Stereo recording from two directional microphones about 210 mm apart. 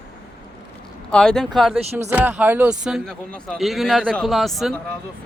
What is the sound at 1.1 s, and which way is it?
Speech, 5° left (ahead or behind).